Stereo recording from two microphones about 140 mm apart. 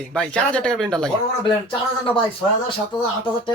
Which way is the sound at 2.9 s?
30° left (ahead or behind).